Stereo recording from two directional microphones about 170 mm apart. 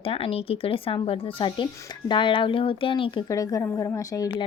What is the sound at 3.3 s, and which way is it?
A woman's voice, 20° left (ahead or behind).